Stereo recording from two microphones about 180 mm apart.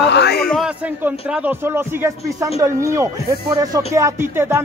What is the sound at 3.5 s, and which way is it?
Speech, 20° right (ahead or behind).